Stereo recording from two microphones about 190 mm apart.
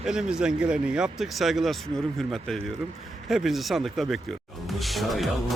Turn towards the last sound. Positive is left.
turn(degrees=0)  # may be behind; listen again after turning